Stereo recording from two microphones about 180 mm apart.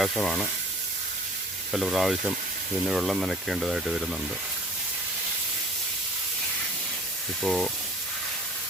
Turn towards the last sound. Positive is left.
turn(degrees=0)  # may be behind; listen again after turning